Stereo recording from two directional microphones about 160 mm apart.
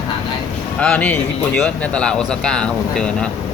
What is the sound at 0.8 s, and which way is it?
Speech, 10° left (ahead or behind).